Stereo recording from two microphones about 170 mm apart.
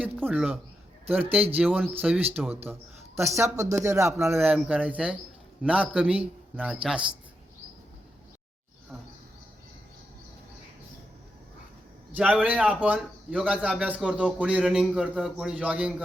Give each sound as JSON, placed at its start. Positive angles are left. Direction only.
{"t": 0.3, "sound": "a man's voice", "side_deg": -5}
{"t": 12.1, "sound": "a man's voice", "side_deg": -5}